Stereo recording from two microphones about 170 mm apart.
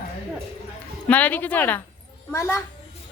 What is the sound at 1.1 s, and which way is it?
Speech, 10° left (ahead or behind).